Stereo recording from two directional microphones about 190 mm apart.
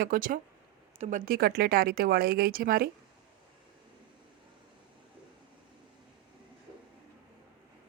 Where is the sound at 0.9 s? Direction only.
35° right (ahead or behind).